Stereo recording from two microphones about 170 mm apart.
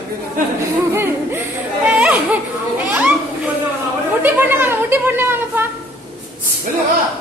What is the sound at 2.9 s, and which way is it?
Children playing, 10° right (ahead or behind).